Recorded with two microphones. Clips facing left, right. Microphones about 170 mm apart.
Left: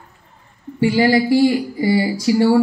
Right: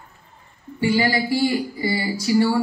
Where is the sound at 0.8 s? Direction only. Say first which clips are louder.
Left 5 dB; 75° left (ahead or behind).